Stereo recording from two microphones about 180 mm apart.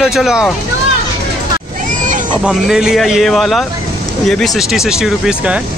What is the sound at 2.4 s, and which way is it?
Speech, 5° right (ahead or behind).